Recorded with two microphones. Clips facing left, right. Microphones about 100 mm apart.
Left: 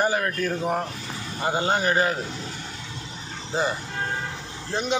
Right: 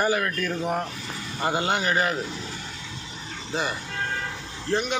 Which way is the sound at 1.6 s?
30° left (ahead or behind).